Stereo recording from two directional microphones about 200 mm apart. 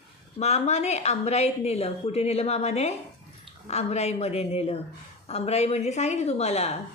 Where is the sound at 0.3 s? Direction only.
35° left (ahead or behind).